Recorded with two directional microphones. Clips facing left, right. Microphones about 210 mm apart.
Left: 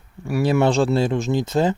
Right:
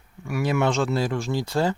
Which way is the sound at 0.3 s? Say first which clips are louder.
Left 5 dB; 35° left (ahead or behind).